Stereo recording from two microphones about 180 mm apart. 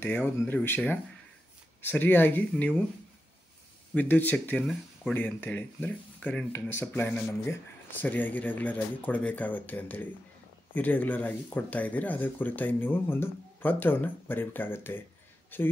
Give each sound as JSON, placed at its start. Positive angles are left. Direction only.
{"t": 0.0, "sound": "speech", "side_deg": 10}
{"t": 3.9, "sound": "speech", "side_deg": 10}